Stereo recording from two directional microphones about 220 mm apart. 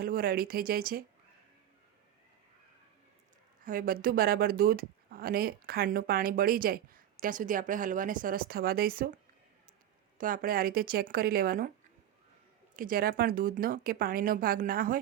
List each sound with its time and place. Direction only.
0.0 s speech: 40° right (ahead or behind)
3.6 s speech: 40° right (ahead or behind)
10.2 s speech: 40° right (ahead or behind)
12.7 s speech: 40° right (ahead or behind)